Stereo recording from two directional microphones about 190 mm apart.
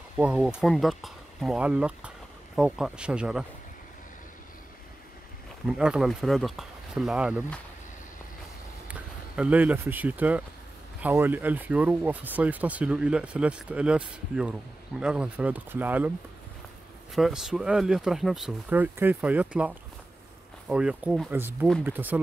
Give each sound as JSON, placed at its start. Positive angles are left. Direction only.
{"t": 0.2, "sound": "speech", "side_deg": -5}
{"t": 5.7, "sound": "speech", "side_deg": -5}
{"t": 8.8, "sound": "speech", "side_deg": -5}
{"t": 17.1, "sound": "speech", "side_deg": 0}